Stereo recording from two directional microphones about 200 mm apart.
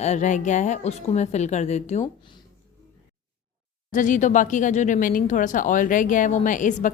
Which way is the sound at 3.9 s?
40° left (ahead or behind).